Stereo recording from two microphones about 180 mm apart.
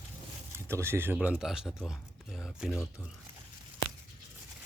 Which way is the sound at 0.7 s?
15° right (ahead or behind).